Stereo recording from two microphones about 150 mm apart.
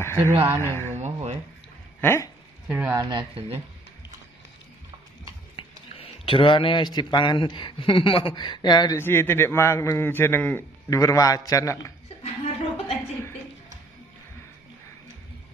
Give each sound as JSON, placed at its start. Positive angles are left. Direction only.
{"t": 0.6, "sound": "a man's voice", "side_deg": 15}
{"t": 0.9, "sound": "a sound", "side_deg": -50}
{"t": 2.0, "sound": "speech", "side_deg": 15}
{"t": 2.7, "sound": "speech", "side_deg": -15}
{"t": 3.1, "sound": "speech", "side_deg": -35}
{"t": 5.6, "sound": "a man's voice", "side_deg": 35}
{"t": 9.0, "sound": "a man's voice", "side_deg": 15}
{"t": 12.2, "sound": "chuckle", "side_deg": 45}